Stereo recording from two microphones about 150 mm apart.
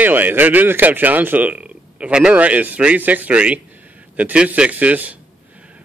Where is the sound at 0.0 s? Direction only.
10° right (ahead or behind).